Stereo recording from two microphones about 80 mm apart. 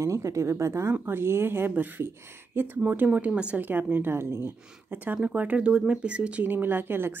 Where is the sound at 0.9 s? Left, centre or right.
Right.